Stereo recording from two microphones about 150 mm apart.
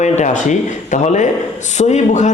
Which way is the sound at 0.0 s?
55° left (ahead or behind).